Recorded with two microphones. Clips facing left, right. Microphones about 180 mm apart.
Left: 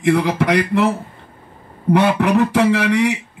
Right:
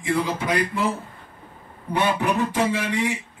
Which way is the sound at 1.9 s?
70° left (ahead or behind).